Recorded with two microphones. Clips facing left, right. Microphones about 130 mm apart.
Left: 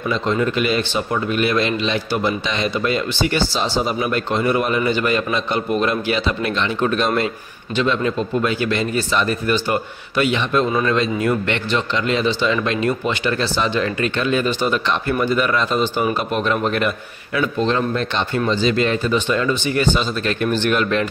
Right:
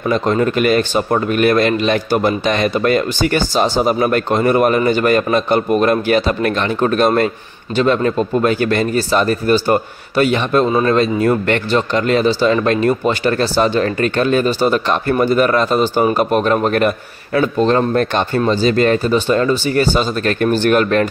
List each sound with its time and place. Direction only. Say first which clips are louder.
0.1 s speech: right 5 dB; 50° right (ahead or behind)